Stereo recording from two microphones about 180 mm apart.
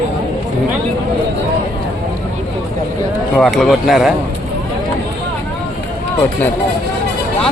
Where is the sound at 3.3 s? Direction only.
Centre (ahead or behind).